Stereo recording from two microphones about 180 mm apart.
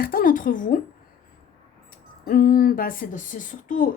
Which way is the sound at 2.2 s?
55° left (ahead or behind).